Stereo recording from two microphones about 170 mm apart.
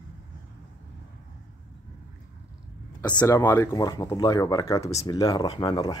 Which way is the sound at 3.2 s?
20° left (ahead or behind).